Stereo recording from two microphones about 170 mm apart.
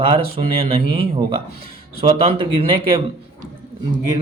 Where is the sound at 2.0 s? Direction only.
35° right (ahead or behind).